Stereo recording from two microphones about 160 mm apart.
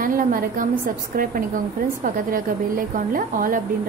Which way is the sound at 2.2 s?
60° right (ahead or behind).